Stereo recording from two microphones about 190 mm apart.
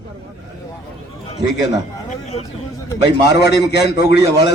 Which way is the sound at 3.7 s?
60° left (ahead or behind).